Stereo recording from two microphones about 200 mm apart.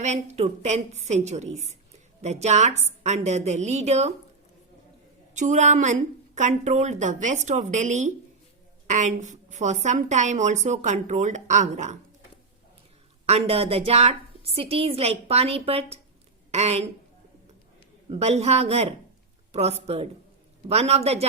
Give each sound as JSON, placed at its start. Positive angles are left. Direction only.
{"t": 0.0, "sound": "a woman's voice", "side_deg": -35}
{"t": 5.3, "sound": "a woman's voice", "side_deg": -35}
{"t": 13.2, "sound": "a woman's voice", "side_deg": -30}
{"t": 18.1, "sound": "a woman's voice", "side_deg": -35}